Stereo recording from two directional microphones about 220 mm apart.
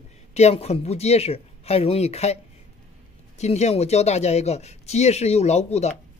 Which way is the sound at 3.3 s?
30° left (ahead or behind).